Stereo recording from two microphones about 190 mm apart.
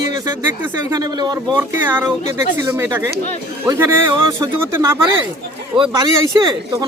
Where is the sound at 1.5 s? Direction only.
10° right (ahead or behind).